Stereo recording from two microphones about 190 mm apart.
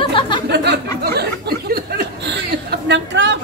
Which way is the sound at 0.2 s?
30° left (ahead or behind).